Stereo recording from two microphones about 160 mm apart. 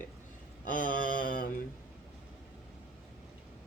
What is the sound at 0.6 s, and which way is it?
Speech, 60° left (ahead or behind).